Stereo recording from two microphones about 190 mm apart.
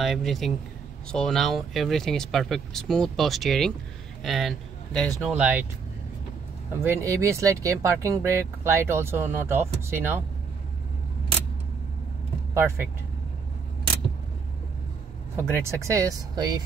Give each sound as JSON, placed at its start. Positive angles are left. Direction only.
{"t": 0.0, "sound": "a man's voice", "side_deg": 0}
{"t": 6.8, "sound": "speech", "side_deg": -15}
{"t": 12.5, "sound": "speech", "side_deg": -15}
{"t": 15.3, "sound": "speech", "side_deg": -15}